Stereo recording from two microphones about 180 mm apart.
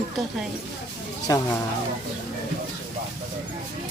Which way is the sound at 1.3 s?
20° left (ahead or behind).